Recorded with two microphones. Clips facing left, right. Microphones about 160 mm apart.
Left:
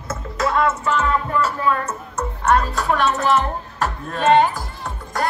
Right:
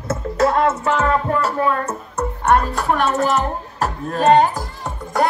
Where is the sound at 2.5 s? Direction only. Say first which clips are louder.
Right 1 dB; 50° right (ahead or behind).